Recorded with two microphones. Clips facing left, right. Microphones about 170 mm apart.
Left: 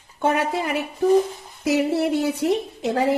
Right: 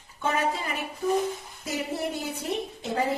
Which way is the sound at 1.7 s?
75° left (ahead or behind).